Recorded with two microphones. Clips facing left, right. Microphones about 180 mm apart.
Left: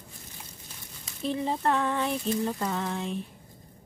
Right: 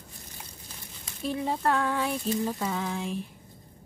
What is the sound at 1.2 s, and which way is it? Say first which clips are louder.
Speech: left 1 dB; centre (ahead or behind).